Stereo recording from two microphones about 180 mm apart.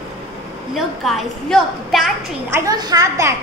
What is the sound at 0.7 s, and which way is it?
A woman's voice, centre (ahead or behind).